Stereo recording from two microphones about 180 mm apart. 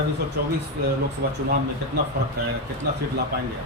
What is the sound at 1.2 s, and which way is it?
Speech, 60° right (ahead or behind).